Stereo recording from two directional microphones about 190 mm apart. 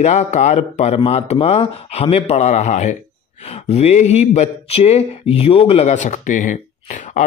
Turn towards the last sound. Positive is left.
turn(degrees=40)  # may be behind; listen again after turning